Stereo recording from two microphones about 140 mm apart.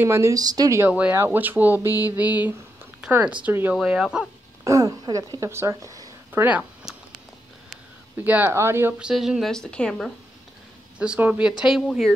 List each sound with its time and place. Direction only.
0.0 s speech: 20° right (ahead or behind)
1.9 s mantra: 25° left (ahead or behind)
2.1 s speech: 10° right (ahead or behind)
4.6 s a woman's voice: 25° right (ahead or behind)
6.4 s speech: 5° right (ahead or behind)
8.2 s speech: 10° right (ahead or behind)
9.0 s speech: 5° right (ahead or behind)
11.0 s speech: 10° right (ahead or behind)